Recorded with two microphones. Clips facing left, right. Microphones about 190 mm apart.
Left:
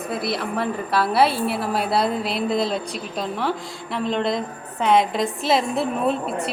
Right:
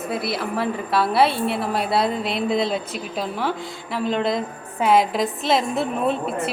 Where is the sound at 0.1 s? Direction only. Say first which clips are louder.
Even; centre (ahead or behind).